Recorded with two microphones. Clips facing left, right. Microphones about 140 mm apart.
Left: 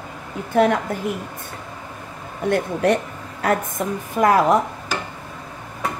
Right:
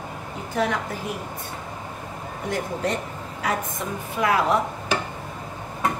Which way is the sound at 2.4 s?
65° left (ahead or behind).